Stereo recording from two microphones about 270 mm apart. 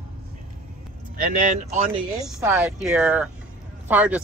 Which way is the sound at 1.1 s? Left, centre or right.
Right.